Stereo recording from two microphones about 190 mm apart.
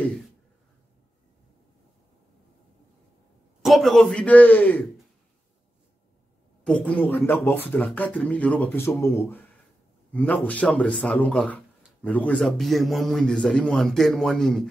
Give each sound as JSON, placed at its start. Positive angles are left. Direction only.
{"t": 3.6, "sound": "a man's voice", "side_deg": 0}
{"t": 6.6, "sound": "a man's voice", "side_deg": 5}